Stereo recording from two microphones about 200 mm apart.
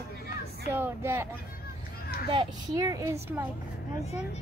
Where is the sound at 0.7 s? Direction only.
10° right (ahead or behind).